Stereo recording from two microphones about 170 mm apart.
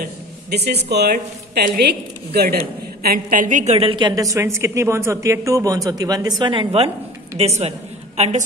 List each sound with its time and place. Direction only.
0.0 s a woman's voice: 75° right (ahead or behind); by 8.5 s 45° right (ahead or behind)